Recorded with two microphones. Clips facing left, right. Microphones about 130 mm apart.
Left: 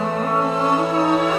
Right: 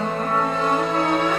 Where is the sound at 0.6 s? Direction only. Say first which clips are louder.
Left 3 dB; 25° left (ahead or behind).